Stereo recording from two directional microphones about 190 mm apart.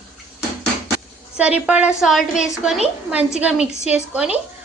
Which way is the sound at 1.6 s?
5° right (ahead or behind).